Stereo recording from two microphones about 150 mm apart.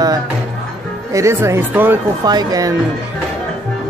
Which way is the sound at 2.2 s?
25° right (ahead or behind).